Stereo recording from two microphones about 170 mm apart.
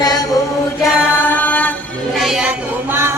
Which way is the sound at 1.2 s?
10° left (ahead or behind).